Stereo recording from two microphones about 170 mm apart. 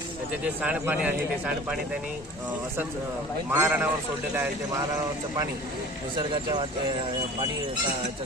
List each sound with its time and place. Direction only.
0.4 s speech: 10° right (ahead or behind)
3.5 s speech: 10° right (ahead or behind)
6.1 s speech: 25° right (ahead or behind)